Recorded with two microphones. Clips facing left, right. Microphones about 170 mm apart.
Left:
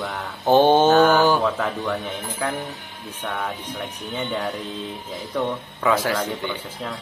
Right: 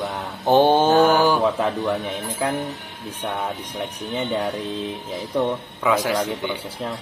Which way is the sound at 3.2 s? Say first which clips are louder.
Right 2 dB; 20° right (ahead or behind).